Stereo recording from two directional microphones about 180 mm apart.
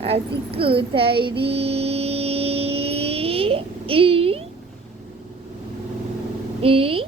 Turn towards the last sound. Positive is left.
turn(degrees=-30)  # may be behind; listen again after turning